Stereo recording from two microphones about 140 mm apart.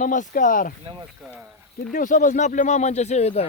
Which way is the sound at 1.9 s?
70° left (ahead or behind).